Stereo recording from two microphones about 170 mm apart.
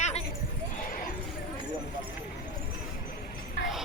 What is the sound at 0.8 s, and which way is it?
Horse, 55° left (ahead or behind).